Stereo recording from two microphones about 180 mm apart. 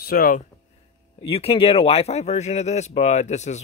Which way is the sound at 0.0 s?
55° left (ahead or behind).